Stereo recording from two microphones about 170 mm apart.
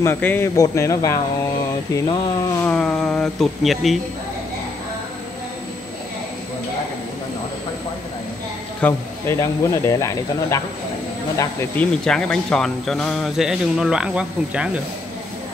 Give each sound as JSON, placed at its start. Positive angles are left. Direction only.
{"t": 0.0, "sound": "speech", "side_deg": 15}
{"t": 8.8, "sound": "speech", "side_deg": 15}
{"t": 11.7, "sound": "speech", "side_deg": 5}